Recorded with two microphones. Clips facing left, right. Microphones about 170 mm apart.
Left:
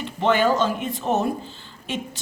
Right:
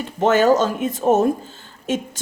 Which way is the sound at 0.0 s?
45° right (ahead or behind).